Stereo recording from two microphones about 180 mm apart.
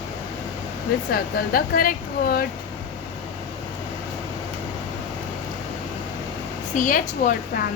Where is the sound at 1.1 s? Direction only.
55° left (ahead or behind).